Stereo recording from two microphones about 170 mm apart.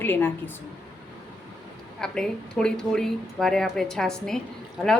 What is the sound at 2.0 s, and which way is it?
Speech, 5° left (ahead or behind).